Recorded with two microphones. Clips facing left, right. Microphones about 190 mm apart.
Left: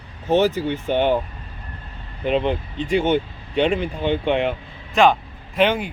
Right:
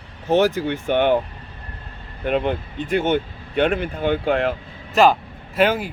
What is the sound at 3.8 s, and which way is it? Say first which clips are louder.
Speech: right 1 dB; 50° right (ahead or behind).